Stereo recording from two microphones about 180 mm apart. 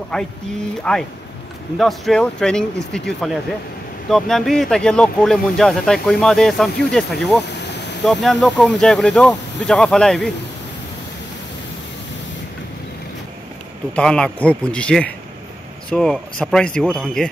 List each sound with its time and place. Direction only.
0.1 s speech: centre (ahead or behind)
13.9 s speech: 5° left (ahead or behind)